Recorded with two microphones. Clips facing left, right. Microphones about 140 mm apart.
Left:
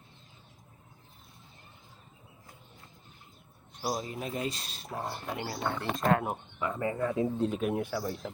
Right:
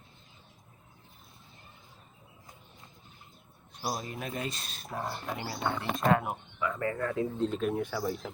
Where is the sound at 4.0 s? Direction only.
25° left (ahead or behind).